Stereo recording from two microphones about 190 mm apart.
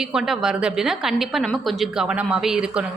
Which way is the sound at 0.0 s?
Centre (ahead or behind).